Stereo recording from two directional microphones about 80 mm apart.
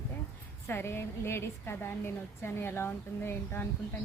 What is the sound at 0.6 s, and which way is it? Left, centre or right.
A woman's voice, left.